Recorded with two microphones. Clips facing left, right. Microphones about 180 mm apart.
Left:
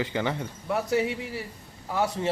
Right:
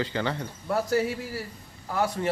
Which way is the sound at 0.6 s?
Centre (ahead or behind).